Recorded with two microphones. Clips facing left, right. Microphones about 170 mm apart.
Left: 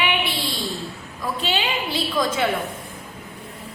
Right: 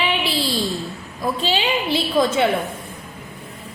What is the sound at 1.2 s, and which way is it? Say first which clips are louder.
A woman's voice: right 3 dB; 30° right (ahead or behind).